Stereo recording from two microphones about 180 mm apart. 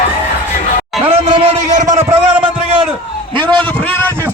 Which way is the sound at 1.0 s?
30° right (ahead or behind).